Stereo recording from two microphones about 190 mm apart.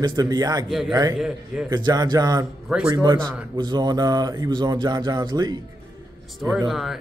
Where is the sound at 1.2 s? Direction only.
5° right (ahead or behind).